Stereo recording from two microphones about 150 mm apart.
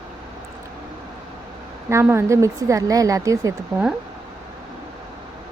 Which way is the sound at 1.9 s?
15° right (ahead or behind).